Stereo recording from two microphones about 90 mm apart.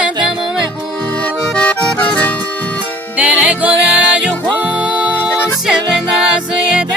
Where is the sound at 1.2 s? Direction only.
15° left (ahead or behind).